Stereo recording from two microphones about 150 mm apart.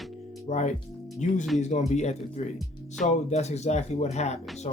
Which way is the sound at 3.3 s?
45° left (ahead or behind).